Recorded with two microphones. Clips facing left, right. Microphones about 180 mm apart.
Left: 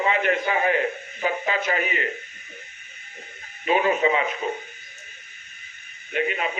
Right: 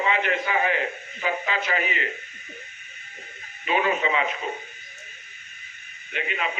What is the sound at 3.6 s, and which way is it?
Radio, 40° left (ahead or behind).